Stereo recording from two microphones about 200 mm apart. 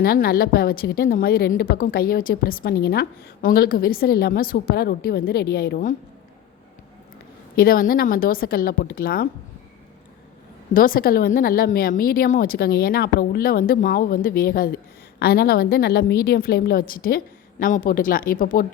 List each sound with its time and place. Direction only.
0.0 s a woman's voice: 50° left (ahead or behind)
7.5 s a woman's voice: 45° left (ahead or behind)
10.8 s a woman's voice: 45° left (ahead or behind)